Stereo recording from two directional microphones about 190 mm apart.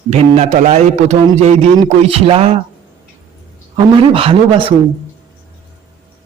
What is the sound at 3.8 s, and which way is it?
Speech, 30° right (ahead or behind).